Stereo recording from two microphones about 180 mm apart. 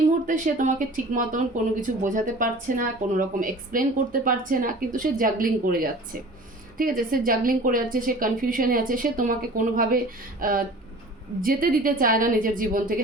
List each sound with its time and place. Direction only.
0.3 s speech: 45° right (ahead or behind)